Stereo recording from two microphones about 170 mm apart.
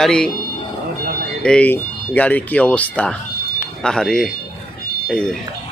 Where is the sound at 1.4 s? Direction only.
5° left (ahead or behind).